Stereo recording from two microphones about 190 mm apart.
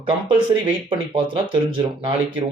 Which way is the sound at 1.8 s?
25° right (ahead or behind).